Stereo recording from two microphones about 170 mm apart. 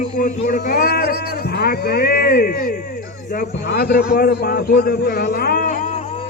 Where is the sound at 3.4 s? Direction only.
70° left (ahead or behind); by 5.8 s 50° left (ahead or behind).